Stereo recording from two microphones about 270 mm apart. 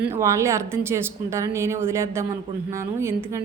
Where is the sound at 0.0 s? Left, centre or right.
Centre.